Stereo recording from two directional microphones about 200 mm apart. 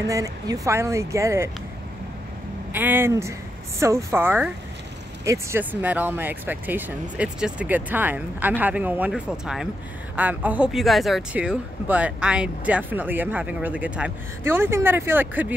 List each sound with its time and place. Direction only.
0.1 s speech: 15° right (ahead or behind)
2.7 s speech: 10° right (ahead or behind)